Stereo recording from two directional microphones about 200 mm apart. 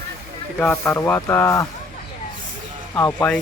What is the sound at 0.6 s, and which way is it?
Speech, 10° left (ahead or behind).